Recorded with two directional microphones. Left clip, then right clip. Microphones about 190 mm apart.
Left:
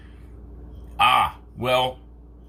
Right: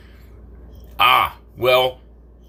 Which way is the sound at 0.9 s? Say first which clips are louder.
Right 3 dB; 30° right (ahead or behind).